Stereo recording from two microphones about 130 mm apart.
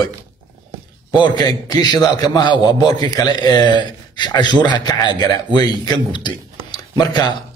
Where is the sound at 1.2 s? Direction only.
30° left (ahead or behind).